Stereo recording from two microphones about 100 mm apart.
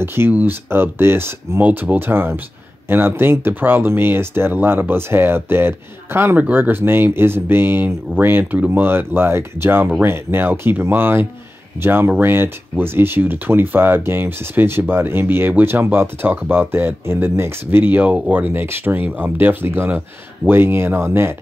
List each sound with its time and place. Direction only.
0.0 s speech: 25° right (ahead or behind)